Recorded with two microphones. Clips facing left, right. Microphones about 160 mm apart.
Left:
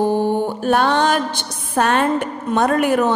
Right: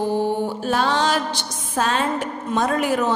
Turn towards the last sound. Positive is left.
turn(degrees=60)  # may be behind; listen again after turning